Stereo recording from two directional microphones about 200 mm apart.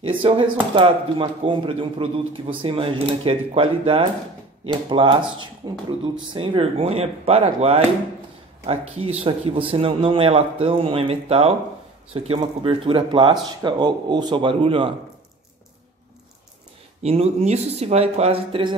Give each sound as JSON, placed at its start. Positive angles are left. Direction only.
{"t": 0.0, "sound": "speech", "side_deg": -25}
{"t": 17.0, "sound": "speech", "side_deg": -30}